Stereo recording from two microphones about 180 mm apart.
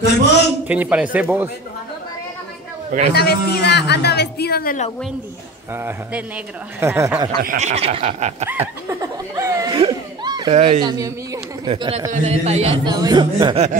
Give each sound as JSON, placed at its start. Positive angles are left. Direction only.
{"t": 0.0, "sound": "a man's voice", "side_deg": 70}
{"t": 0.7, "sound": "a man's voice", "side_deg": -10}
{"t": 3.2, "sound": "a woman's voice", "side_deg": 65}
{"t": 5.8, "sound": "a man's voice", "side_deg": -10}
{"t": 7.5, "sound": "snicker", "side_deg": -35}
{"t": 8.5, "sound": "snicker", "side_deg": -15}
{"t": 9.8, "sound": "a sound", "side_deg": -25}
{"t": 10.5, "sound": "snicker", "side_deg": -35}
{"t": 10.8, "sound": "speech", "side_deg": -20}
{"t": 11.6, "sound": "snicker", "side_deg": -30}
{"t": 12.9, "sound": "speech", "side_deg": -20}